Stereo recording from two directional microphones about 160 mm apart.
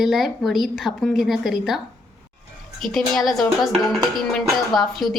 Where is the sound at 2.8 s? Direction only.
Centre (ahead or behind).